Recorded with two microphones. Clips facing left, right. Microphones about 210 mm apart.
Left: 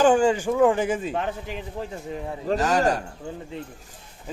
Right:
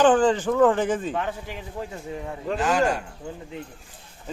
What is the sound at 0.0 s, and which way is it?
Speech, 10° left (ahead or behind).